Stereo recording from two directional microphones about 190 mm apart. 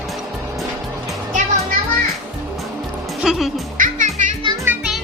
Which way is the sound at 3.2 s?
Centre (ahead or behind).